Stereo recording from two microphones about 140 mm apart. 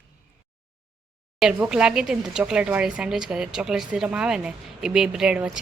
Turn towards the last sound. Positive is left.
turn(degrees=-5)  # may be behind; listen again after turning